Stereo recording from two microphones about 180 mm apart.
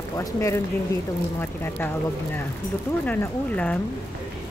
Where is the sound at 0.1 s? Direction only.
20° left (ahead or behind).